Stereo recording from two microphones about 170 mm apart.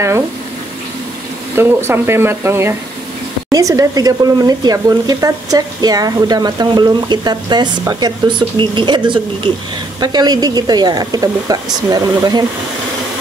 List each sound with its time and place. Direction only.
1.6 s speech: 15° right (ahead or behind)